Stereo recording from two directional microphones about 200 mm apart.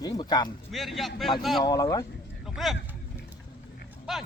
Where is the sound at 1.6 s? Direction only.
20° left (ahead or behind).